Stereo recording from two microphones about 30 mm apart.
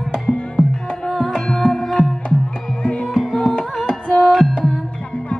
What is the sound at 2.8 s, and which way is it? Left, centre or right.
Music, left.